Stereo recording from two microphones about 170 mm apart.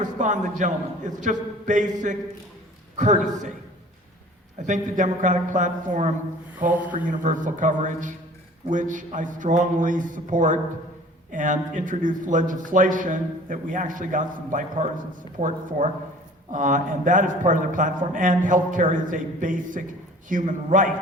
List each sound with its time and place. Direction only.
0.0 s speech: 50° right (ahead or behind)
3.0 s speech: 45° right (ahead or behind)
4.6 s speech: 45° right (ahead or behind)
6.7 s speech: 10° right (ahead or behind)
6.9 s speech: 50° right (ahead or behind)